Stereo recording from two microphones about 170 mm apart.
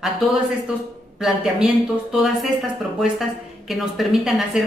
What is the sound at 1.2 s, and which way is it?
Speech, centre (ahead or behind).